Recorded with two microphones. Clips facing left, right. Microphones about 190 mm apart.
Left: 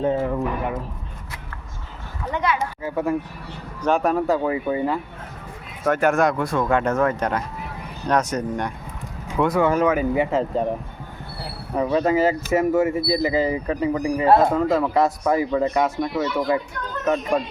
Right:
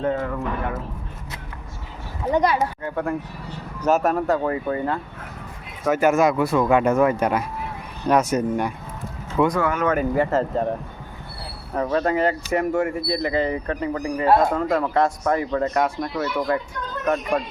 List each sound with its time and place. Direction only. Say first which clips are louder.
0.0 s speech: left 2 dB; 20° left (ahead or behind)
2.2 s speech: right 4 dB; 35° right (ahead or behind)
2.8 s speech: left 2 dB; 5° left (ahead or behind)
4.5 s speech: left 2 dB; 10° left (ahead or behind)
5.8 s speech: right 1 dB; 5° right (ahead or behind)
11.7 s speech: left 2 dB; 10° left (ahead or behind)